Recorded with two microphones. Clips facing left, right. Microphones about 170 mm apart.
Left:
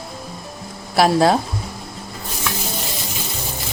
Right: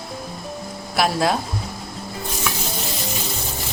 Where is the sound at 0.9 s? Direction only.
35° left (ahead or behind).